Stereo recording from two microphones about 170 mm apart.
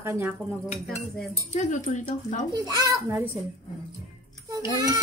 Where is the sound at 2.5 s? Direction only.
20° right (ahead or behind).